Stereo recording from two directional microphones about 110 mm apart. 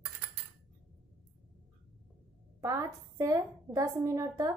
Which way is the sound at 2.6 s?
30° right (ahead or behind).